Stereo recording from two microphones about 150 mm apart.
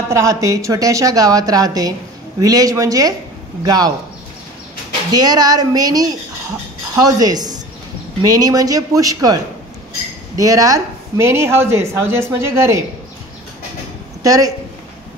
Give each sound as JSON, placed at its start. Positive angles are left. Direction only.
{"t": 0.1, "sound": "a woman's voice", "side_deg": -20}
{"t": 5.1, "sound": "a woman's voice", "side_deg": -25}
{"t": 14.2, "sound": "a woman's voice", "side_deg": -25}